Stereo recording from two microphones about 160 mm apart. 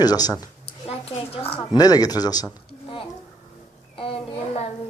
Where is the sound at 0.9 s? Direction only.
35° left (ahead or behind).